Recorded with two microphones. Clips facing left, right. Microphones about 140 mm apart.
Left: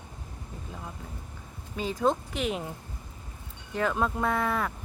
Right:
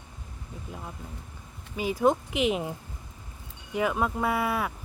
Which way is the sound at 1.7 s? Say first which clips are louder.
Right 3 dB; 10° right (ahead or behind).